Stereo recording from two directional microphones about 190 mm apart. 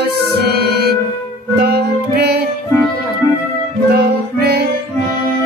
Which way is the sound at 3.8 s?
55° right (ahead or behind).